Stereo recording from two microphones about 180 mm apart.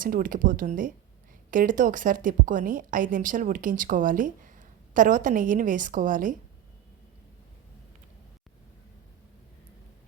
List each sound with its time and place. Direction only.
0.0 s a woman's voice: 50° right (ahead or behind)